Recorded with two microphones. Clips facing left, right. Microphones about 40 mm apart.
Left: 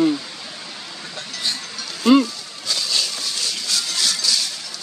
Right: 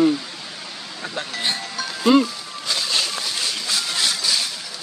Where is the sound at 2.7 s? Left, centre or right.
Right.